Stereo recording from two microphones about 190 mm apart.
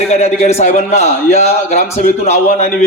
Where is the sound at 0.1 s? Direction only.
35° left (ahead or behind).